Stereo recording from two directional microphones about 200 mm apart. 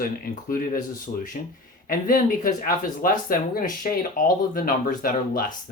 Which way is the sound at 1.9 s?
45° left (ahead or behind).